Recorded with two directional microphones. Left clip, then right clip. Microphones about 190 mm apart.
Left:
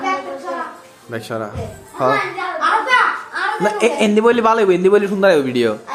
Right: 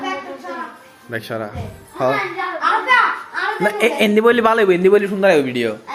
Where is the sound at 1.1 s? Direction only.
10° left (ahead or behind).